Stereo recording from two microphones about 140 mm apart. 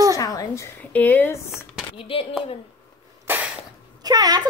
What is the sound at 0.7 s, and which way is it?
Speech, 15° left (ahead or behind).